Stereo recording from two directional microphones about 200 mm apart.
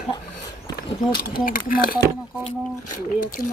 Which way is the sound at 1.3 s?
45° left (ahead or behind).